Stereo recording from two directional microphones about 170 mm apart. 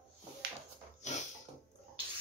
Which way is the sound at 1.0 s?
45° left (ahead or behind).